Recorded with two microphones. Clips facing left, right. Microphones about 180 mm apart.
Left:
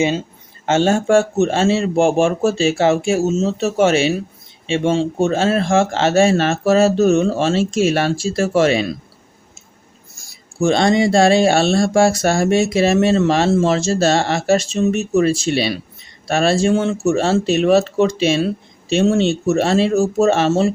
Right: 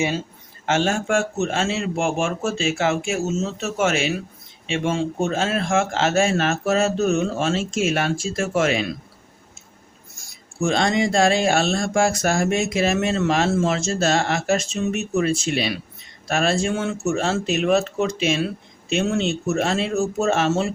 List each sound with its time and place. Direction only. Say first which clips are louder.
0.6 s speech: left 6 dB; 30° left (ahead or behind)
10.6 s speech: left 6 dB; 35° left (ahead or behind)